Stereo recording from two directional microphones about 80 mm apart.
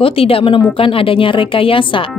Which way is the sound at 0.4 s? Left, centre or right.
Left.